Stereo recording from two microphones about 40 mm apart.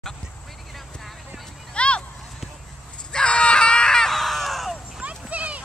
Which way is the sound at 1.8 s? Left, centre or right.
Left.